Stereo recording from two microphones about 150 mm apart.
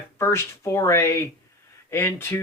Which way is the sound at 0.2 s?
15° left (ahead or behind).